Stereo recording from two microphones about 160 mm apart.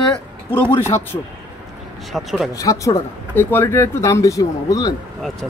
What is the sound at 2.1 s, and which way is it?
Speech, centre (ahead or behind).